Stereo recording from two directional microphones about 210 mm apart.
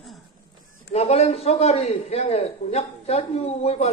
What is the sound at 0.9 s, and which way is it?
A man's voice, 30° left (ahead or behind).